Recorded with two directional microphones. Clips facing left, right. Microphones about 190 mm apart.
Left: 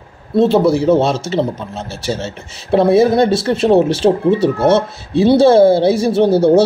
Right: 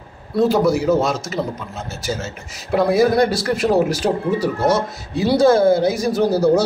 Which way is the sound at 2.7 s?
25° left (ahead or behind).